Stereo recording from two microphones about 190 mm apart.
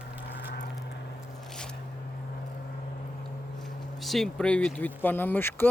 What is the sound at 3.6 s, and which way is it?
Speech, centre (ahead or behind).